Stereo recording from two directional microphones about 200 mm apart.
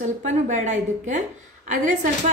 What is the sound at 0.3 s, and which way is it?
Speech, 40° right (ahead or behind).